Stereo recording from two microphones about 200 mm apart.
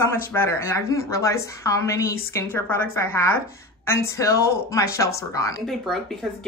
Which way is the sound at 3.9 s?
15° left (ahead or behind).